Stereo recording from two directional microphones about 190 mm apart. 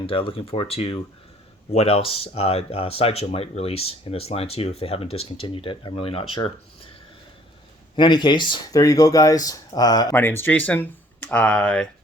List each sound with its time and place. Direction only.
0.0 s speech: 25° left (ahead or behind)
7.9 s speech: 25° left (ahead or behind); by 11.9 s 5° left (ahead or behind)